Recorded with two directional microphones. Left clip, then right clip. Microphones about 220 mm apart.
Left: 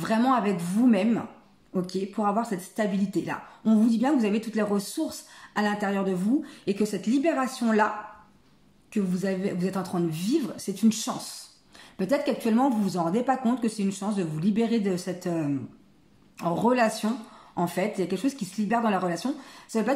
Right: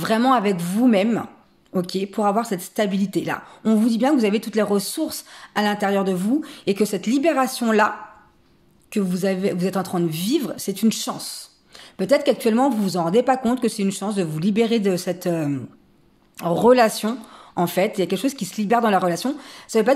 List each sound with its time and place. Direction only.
0.0 s speech: 40° right (ahead or behind)
8.9 s speech: 40° right (ahead or behind)